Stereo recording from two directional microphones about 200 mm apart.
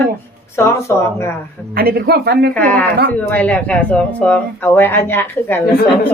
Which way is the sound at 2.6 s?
10° left (ahead or behind).